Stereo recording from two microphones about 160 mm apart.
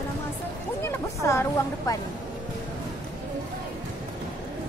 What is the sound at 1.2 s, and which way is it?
Speech, 20° left (ahead or behind).